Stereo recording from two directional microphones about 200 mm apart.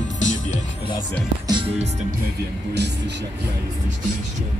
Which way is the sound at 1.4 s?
25° right (ahead or behind).